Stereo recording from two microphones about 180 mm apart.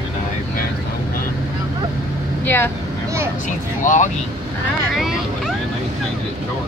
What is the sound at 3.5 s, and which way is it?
Vehicle, 45° left (ahead or behind).